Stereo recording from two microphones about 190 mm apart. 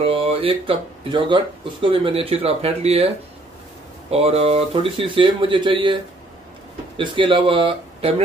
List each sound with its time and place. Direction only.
0.0 s speech: 30° right (ahead or behind)
4.1 s speech: 30° right (ahead or behind)
7.0 s speech: 25° right (ahead or behind)